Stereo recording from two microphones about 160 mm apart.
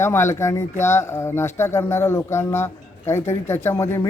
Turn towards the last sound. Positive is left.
turn(degrees=15)  # may be behind; listen again after turning